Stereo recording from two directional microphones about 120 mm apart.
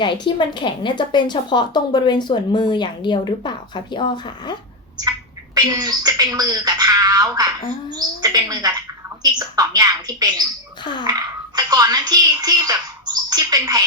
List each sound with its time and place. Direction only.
0.0 s a woman's voice: 40° left (ahead or behind)
5.5 s speech: 35° right (ahead or behind)
10.9 s a woman's voice: 40° left (ahead or behind)
11.5 s speech: 35° right (ahead or behind)